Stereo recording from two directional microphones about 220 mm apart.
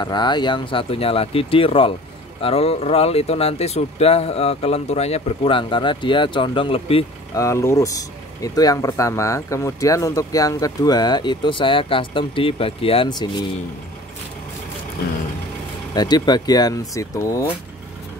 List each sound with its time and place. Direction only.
0.0 s speech: 20° left (ahead or behind)
7.4 s speech: 15° left (ahead or behind)
15.9 s speech: 20° left (ahead or behind)